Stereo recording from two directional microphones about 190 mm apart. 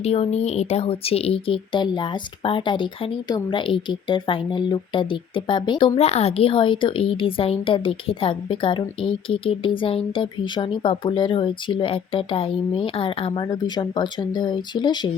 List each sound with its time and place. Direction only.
0.0 s speech: 35° left (ahead or behind)